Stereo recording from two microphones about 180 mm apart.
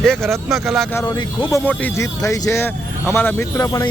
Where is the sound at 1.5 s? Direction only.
15° left (ahead or behind).